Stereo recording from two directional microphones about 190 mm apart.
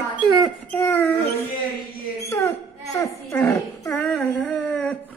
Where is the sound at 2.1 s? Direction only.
15° left (ahead or behind).